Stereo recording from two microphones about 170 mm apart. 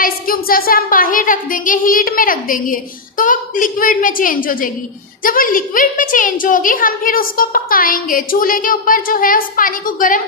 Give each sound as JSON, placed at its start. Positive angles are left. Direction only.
{"t": 0.0, "sound": "a woman's voice", "side_deg": 60}